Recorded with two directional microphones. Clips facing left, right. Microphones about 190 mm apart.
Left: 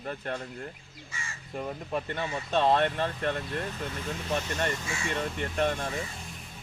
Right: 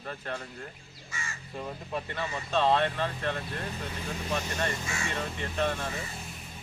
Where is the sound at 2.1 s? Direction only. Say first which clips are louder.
Even; 50° left (ahead or behind).